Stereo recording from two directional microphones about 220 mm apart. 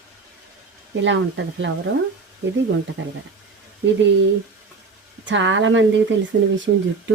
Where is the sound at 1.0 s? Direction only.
55° right (ahead or behind).